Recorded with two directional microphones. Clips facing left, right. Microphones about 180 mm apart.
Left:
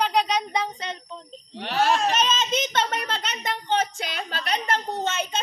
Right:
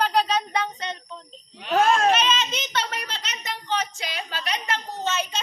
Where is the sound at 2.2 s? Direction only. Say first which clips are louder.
Left 1 dB; 45° left (ahead or behind).